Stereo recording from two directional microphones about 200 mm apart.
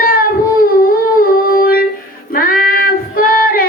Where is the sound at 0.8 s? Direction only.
45° left (ahead or behind).